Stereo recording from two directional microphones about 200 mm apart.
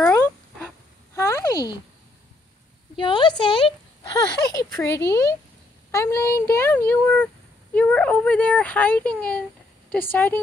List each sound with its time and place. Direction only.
0.0 s a sound: 10° left (ahead or behind)
3.0 s a woman's voice: 25° left (ahead or behind)
4.5 s speech: 15° left (ahead or behind)